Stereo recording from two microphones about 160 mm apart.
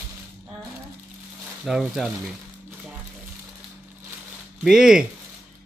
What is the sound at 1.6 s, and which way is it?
Speech, centre (ahead or behind).